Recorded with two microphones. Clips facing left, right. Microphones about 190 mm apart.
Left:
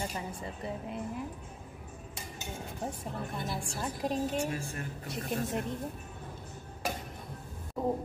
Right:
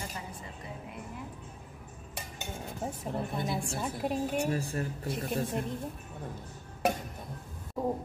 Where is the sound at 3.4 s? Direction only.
5° right (ahead or behind).